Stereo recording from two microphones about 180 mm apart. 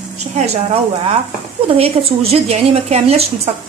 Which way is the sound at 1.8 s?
35° right (ahead or behind).